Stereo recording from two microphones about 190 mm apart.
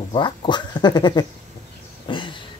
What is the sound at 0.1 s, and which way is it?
Speech, 25° left (ahead or behind).